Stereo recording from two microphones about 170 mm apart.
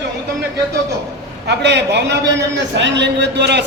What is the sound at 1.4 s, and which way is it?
A man's voice, 80° right.